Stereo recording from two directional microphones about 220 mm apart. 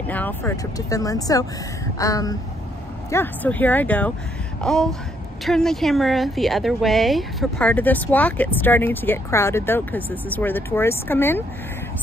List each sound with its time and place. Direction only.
0.0 s a woman's voice: 5° left (ahead or behind)